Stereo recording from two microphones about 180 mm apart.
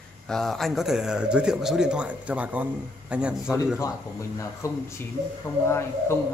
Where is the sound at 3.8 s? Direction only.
15° left (ahead or behind).